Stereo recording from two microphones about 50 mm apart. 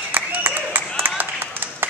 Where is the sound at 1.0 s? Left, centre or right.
Right.